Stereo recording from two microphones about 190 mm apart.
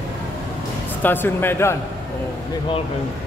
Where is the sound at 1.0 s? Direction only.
10° left (ahead or behind).